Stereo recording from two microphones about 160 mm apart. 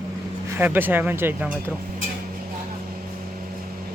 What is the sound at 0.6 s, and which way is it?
Speech, 10° right (ahead or behind).